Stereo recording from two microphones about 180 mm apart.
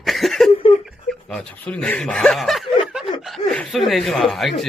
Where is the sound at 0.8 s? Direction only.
Centre (ahead or behind).